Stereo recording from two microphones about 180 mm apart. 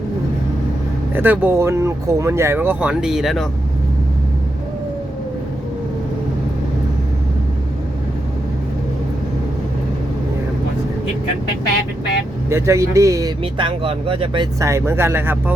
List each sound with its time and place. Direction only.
1.1 s speech: 10° right (ahead or behind)
12.5 s speech: 15° right (ahead or behind)
13.4 s speech: 30° right (ahead or behind)
14.6 s speech: 15° right (ahead or behind)